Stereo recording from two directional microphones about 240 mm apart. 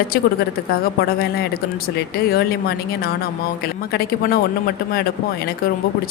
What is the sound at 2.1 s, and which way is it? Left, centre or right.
Speech, left.